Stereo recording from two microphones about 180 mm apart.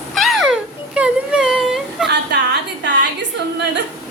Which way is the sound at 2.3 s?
65° right (ahead or behind).